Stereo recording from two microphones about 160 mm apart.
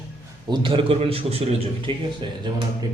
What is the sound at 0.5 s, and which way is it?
A man's voice, 30° right (ahead or behind).